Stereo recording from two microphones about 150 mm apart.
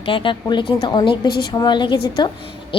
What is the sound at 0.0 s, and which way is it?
A woman's voice, 35° left (ahead or behind).